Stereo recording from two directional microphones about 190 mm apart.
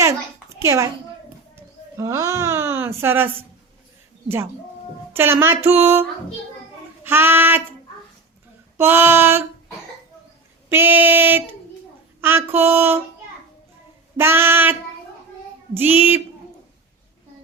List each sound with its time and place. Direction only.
0.6 s speech: 15° right (ahead or behind)
2.0 s speech: 15° right (ahead or behind)
5.1 s speech: 10° right (ahead or behind)
7.0 s child singing: 10° right (ahead or behind)
8.8 s speech: 10° right (ahead or behind)
10.7 s speech: 10° right (ahead or behind)
14.2 s speech: 10° right (ahead or behind)